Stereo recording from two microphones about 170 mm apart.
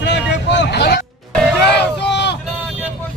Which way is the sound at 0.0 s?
90° left.